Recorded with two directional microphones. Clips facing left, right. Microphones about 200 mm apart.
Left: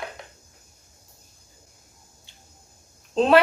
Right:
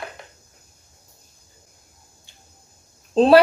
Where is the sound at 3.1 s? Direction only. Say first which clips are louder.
Right 5 dB; 35° right (ahead or behind).